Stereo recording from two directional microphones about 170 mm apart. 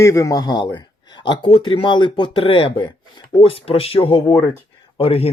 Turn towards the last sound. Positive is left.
turn(degrees=35)  # may be behind; listen again after turning